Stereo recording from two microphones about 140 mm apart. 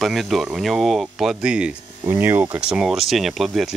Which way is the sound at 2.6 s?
5° right (ahead or behind).